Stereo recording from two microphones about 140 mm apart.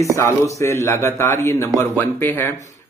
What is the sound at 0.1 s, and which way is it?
A man's voice, 20° left (ahead or behind).